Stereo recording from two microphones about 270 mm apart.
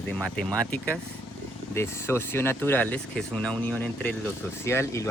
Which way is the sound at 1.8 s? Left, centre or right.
Centre.